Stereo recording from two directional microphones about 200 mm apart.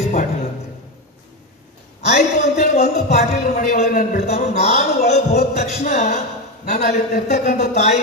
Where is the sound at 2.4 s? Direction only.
35° left (ahead or behind).